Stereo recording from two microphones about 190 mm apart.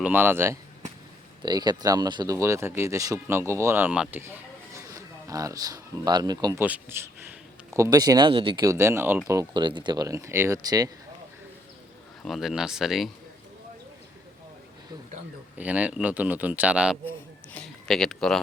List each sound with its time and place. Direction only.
0.0 s speech: 10° right (ahead or behind); by 8.6 s 30° right (ahead or behind)
8.6 s speech: 15° right (ahead or behind)
12.2 s speech: centre (ahead or behind)
15.5 s speech: 5° right (ahead or behind)
17.5 s a sound: 5° left (ahead or behind)